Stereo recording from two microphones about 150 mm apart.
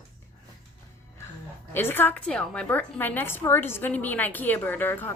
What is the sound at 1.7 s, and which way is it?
A woman's voice, 15° left (ahead or behind).